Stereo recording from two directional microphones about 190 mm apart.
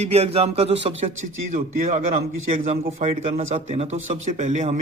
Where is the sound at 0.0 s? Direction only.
35° right (ahead or behind).